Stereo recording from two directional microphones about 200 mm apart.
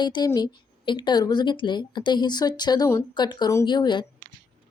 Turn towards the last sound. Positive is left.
turn(degrees=25)  # may be behind; listen again after turning